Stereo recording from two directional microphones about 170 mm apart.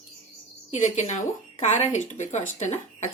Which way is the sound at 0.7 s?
45° left (ahead or behind).